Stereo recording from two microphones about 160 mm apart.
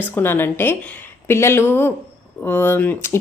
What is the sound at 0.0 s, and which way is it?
A woman's voice, 15° left (ahead or behind).